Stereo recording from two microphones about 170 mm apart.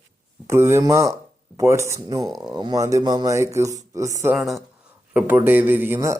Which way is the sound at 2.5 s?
25° right (ahead or behind).